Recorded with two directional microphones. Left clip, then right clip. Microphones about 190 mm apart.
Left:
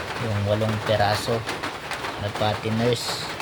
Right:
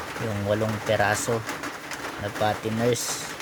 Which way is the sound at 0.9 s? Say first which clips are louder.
Left 1 dB; 30° right (ahead or behind).